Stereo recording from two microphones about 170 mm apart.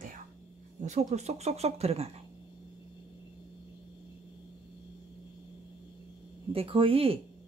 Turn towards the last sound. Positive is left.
turn(degrees=-35)  # may be behind; listen again after turning